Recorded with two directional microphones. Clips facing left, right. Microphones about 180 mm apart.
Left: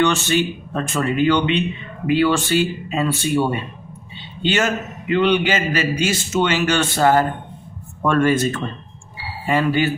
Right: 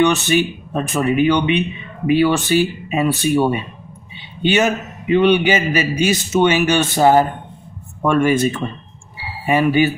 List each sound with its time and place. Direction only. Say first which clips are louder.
0.0 s a man's voice: right 3 dB; 15° right (ahead or behind)